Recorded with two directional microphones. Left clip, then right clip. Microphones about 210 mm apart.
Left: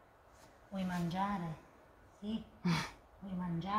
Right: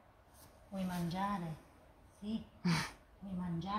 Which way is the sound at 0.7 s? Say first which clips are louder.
Left 2 dB; 10° right (ahead or behind).